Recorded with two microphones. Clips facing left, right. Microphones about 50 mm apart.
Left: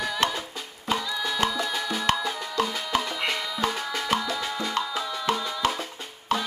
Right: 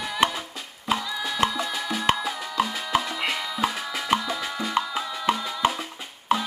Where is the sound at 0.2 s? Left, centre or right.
Centre.